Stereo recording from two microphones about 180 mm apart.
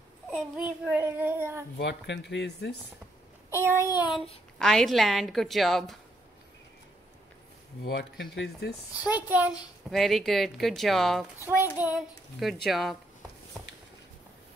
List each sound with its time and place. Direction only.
0.3 s a child's voice: 5° right (ahead or behind)
1.8 s speech: 75° left (ahead or behind)
3.4 s child singing: 15° right (ahead or behind)
4.6 s a child's voice: centre (ahead or behind)
7.8 s speech: 75° left (ahead or behind)
9.3 s a woman's voice: 10° right (ahead or behind)
11.4 s a child's voice: 10° right (ahead or behind)